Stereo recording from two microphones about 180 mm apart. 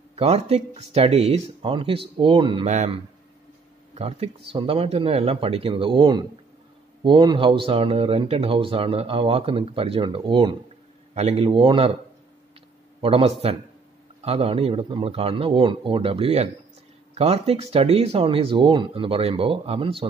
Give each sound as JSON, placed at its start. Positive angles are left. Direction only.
{"t": 0.1, "sound": "speech", "side_deg": -35}
{"t": 13.0, "sound": "speech", "side_deg": -30}